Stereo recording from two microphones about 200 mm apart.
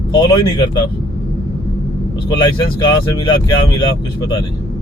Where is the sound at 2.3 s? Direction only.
25° left (ahead or behind).